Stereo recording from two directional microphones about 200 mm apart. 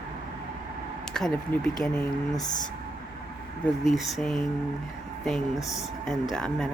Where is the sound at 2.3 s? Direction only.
20° left (ahead or behind).